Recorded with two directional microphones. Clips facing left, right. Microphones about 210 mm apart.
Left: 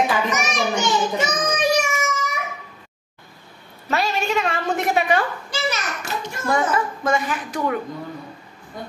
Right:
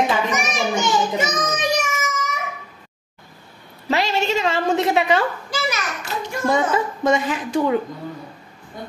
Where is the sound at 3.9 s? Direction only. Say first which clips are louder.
Right 2 dB; 25° right (ahead or behind).